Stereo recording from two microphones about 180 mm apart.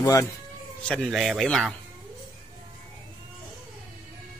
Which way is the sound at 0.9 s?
Centre (ahead or behind).